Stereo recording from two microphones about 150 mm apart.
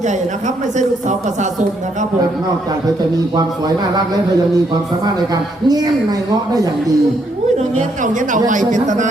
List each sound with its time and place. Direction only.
0.1 s a man's voice: 55° right (ahead or behind)
3.9 s a man's voice: 25° right (ahead or behind)
7.8 s speech: 60° right (ahead or behind)